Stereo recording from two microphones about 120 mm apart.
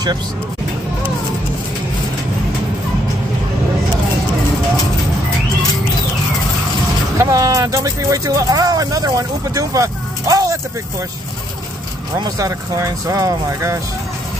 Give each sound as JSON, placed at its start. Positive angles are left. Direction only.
{"t": 7.2, "sound": "speech", "side_deg": -30}
{"t": 12.2, "sound": "speech", "side_deg": -30}